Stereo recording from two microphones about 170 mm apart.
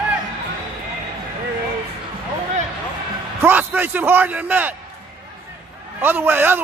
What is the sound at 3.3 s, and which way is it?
A man's voice, 10° right (ahead or behind).